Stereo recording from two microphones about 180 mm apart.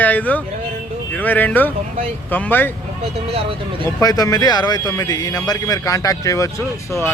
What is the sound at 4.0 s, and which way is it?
Speech, 20° left (ahead or behind).